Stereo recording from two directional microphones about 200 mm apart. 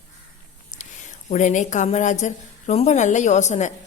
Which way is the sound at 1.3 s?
35° left (ahead or behind).